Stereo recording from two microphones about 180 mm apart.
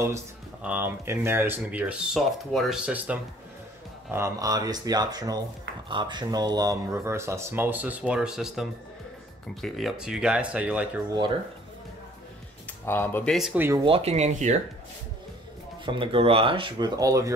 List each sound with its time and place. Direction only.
0.6 s speech: 10° right (ahead or behind)
12.8 s speech: 10° left (ahead or behind)
13.3 s speech: 5° right (ahead or behind)
13.8 s speech: 35° right (ahead or behind)
15.8 s speech: 30° right (ahead or behind)